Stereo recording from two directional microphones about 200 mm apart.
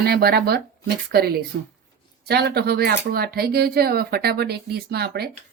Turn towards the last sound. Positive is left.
turn(degrees=-50)  # may be behind; listen again after turning